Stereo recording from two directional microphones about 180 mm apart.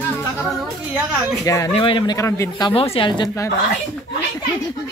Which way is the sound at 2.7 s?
30° left (ahead or behind).